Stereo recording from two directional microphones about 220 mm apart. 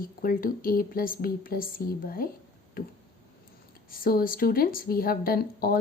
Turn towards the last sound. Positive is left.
turn(degrees=40)  # may be behind; listen again after turning